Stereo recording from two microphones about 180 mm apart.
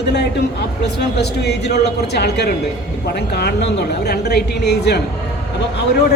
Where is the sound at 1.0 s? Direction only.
70° left (ahead or behind).